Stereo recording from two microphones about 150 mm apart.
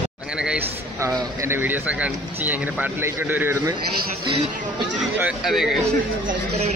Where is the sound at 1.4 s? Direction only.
15° right (ahead or behind).